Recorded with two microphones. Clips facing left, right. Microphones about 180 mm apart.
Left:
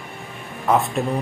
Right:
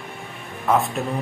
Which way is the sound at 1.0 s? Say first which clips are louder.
Left 3 dB; centre (ahead or behind).